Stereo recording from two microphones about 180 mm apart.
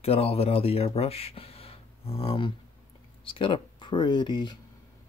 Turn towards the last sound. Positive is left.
turn(degrees=25)  # may be behind; listen again after turning